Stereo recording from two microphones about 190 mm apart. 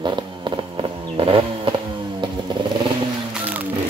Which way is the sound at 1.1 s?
30° right (ahead or behind).